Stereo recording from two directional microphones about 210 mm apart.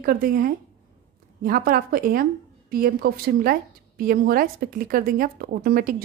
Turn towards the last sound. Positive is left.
turn(degrees=-40)  # may be behind; listen again after turning